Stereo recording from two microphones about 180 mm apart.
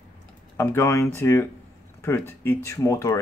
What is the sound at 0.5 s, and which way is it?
Speech, 15° left (ahead or behind).